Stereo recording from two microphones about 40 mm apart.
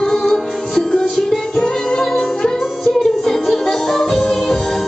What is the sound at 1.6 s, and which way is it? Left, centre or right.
Music, centre.